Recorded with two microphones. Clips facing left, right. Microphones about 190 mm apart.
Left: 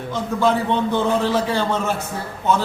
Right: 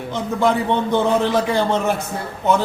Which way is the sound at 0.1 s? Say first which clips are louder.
Right 1 dB; 20° right (ahead or behind).